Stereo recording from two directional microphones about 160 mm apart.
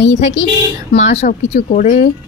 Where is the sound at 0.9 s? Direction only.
45° left (ahead or behind).